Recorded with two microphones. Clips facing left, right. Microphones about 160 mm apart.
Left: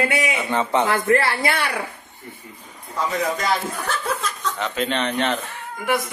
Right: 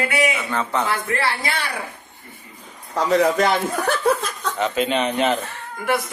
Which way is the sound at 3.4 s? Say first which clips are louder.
Right 4 dB; 60° right (ahead or behind).